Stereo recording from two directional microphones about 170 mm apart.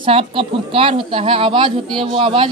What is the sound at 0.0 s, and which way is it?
Speech, 35° right (ahead or behind).